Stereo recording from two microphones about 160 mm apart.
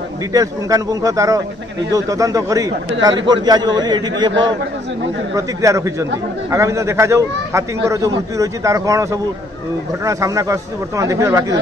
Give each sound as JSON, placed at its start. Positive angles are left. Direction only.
{"t": 0.3, "sound": "a man's voice", "side_deg": -20}
{"t": 5.3, "sound": "a man's voice", "side_deg": -20}